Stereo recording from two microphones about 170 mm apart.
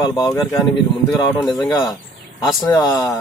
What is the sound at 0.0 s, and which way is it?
Speech, 25° left (ahead or behind).